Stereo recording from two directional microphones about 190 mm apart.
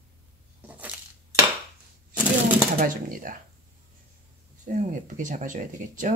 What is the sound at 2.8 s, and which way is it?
Speech, 45° right (ahead or behind).